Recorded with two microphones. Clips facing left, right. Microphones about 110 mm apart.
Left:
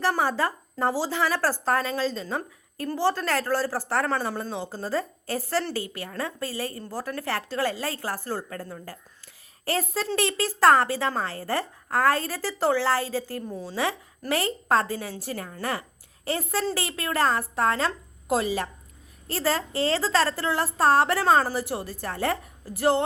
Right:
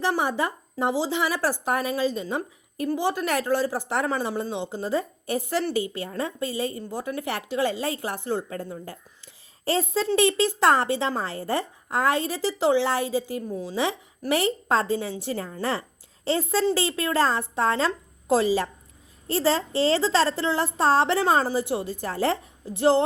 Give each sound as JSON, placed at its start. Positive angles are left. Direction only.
{"t": 0.0, "sound": "a woman's voice", "side_deg": -15}